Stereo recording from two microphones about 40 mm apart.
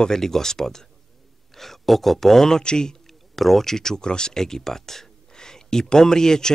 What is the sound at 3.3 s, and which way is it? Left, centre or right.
Speech, centre.